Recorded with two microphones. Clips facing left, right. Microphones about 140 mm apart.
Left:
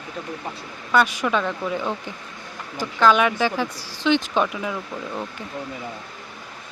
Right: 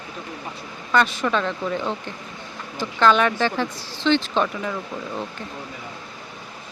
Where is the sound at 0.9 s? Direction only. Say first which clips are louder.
Even; 10° left (ahead or behind).